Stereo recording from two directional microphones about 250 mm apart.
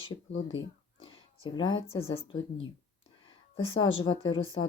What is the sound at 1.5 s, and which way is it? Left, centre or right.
Speech, centre.